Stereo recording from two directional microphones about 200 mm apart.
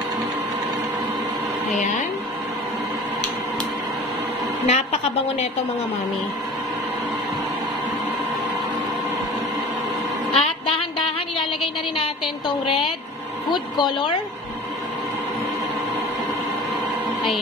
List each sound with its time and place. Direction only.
4.6 s a woman's voice: 35° left (ahead or behind)
10.3 s a sound: 30° left (ahead or behind)
13.5 s speech: 25° left (ahead or behind)